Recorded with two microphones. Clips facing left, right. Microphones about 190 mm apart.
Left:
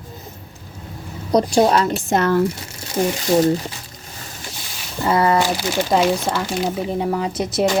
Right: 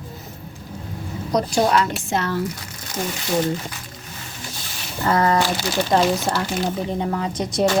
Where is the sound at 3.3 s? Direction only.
30° left (ahead or behind).